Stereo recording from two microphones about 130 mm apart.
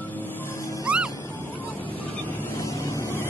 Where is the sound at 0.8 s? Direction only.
10° right (ahead or behind).